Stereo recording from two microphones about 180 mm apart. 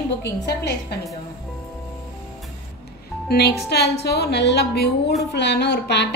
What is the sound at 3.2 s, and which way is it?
A woman's voice, 65° left (ahead or behind).